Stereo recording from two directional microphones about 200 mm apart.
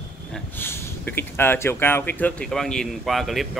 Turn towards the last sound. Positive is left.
turn(degrees=0)  # may be behind; listen again after turning